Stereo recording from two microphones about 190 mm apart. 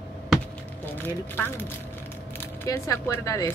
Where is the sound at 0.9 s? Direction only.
10° left (ahead or behind).